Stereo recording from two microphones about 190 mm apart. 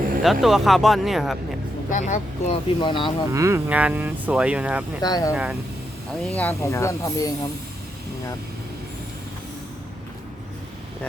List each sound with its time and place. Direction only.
0.2 s speech: centre (ahead or behind)
1.9 s speech: 40° left (ahead or behind)
2.6 s speech: 25° left (ahead or behind)
3.3 s speech: 15° right (ahead or behind)
5.0 s speech: 20° left (ahead or behind)
5.3 s speech: 5° right (ahead or behind)
6.3 s speech: 10° left (ahead or behind)